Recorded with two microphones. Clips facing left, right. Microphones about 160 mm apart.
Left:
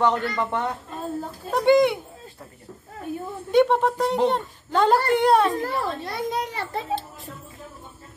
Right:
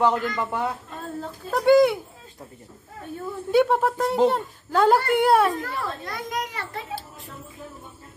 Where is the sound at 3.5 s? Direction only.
5° right (ahead or behind).